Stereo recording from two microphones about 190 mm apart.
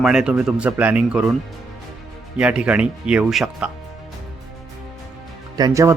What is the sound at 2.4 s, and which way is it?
Speech, 5° right (ahead or behind).